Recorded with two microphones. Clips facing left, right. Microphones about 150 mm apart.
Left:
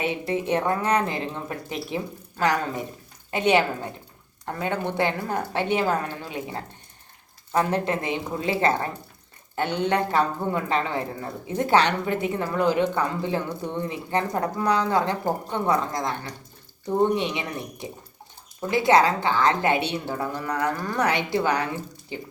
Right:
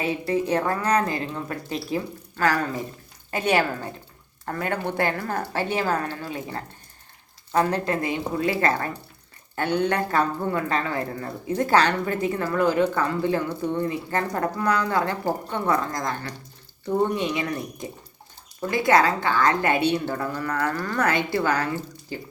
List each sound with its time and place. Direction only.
0.0 s speech: 20° left (ahead or behind)
7.7 s speech: 25° left (ahead or behind)
18.7 s speech: 20° left (ahead or behind)